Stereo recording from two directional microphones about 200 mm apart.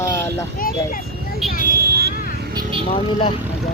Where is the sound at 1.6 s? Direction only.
50° right (ahead or behind).